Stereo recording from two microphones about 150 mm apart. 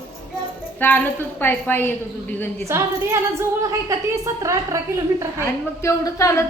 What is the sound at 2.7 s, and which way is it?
A woman's voice, 20° right (ahead or behind).